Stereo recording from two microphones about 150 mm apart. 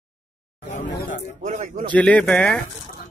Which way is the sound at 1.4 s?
50° right (ahead or behind).